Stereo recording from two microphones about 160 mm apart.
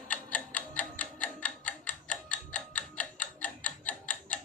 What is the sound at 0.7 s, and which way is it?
Tick-tock, 10° left (ahead or behind).